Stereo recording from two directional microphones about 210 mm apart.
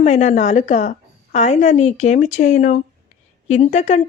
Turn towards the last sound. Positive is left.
turn(degrees=35)  # may be behind; listen again after turning